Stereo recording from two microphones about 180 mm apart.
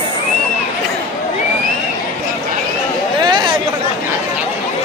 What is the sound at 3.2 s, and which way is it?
Chatter, 25° right (ahead or behind).